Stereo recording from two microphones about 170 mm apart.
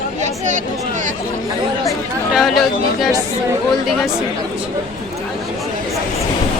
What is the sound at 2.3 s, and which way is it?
Speech, centre (ahead or behind).